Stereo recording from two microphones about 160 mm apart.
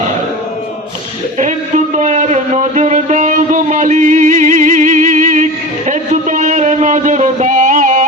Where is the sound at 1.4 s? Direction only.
50° right (ahead or behind).